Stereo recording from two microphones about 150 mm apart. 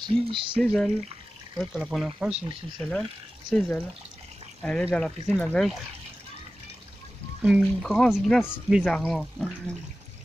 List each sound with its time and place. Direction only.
0.2 s speech: 35° right (ahead or behind)
0.6 s speech: 5° left (ahead or behind)
7.4 s speech: 5° right (ahead or behind)